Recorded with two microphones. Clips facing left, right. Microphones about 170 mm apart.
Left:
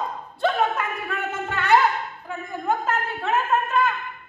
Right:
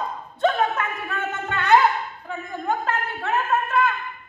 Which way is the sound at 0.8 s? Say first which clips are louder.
Even; centre (ahead or behind).